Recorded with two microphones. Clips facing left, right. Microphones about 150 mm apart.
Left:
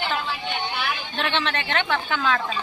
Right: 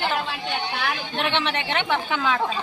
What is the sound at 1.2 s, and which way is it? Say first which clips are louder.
A woman's voice: right 1 dB; 20° right (ahead or behind).